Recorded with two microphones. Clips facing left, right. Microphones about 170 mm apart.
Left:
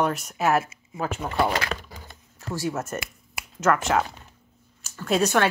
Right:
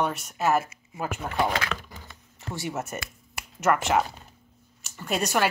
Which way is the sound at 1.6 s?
35° left (ahead or behind).